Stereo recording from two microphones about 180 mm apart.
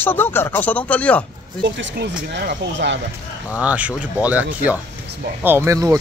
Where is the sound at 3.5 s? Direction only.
5° right (ahead or behind).